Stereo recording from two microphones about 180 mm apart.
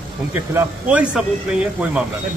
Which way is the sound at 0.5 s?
5° right (ahead or behind).